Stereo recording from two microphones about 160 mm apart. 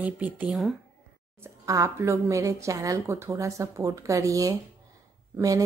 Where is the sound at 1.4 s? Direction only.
20° right (ahead or behind).